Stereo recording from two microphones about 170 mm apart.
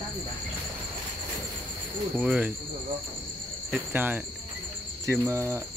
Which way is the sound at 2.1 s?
5° right (ahead or behind).